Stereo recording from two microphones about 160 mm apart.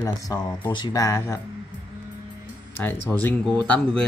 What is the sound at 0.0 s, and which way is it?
Speech, 25° left (ahead or behind).